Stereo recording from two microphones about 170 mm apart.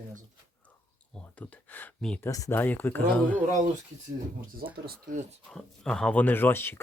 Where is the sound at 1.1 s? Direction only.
10° left (ahead or behind).